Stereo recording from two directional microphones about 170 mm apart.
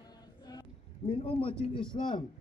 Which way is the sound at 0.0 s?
25° left (ahead or behind).